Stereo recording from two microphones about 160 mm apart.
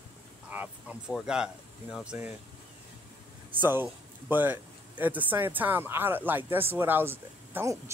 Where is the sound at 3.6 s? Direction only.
10° right (ahead or behind).